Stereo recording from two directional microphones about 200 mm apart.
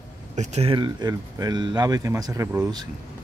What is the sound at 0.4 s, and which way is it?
Speech, 35° right (ahead or behind).